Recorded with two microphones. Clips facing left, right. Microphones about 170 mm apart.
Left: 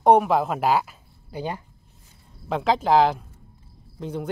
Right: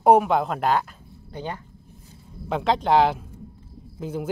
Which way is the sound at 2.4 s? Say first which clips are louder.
Even; centre (ahead or behind).